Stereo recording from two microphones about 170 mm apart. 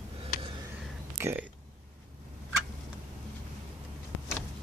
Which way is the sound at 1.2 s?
15° right (ahead or behind).